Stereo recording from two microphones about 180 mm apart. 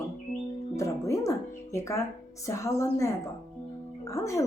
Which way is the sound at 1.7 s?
15° left (ahead or behind).